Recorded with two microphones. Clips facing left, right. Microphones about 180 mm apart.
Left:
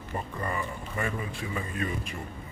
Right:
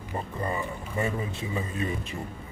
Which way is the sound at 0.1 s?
20° right (ahead or behind).